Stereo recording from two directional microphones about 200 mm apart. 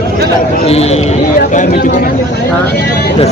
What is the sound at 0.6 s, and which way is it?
Speech, 30° left (ahead or behind).